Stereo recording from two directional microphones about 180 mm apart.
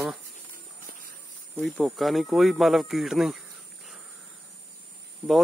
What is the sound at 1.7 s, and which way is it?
Speech, centre (ahead or behind).